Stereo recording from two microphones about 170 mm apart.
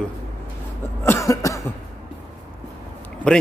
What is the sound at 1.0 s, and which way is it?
Cough, 15° left (ahead or behind).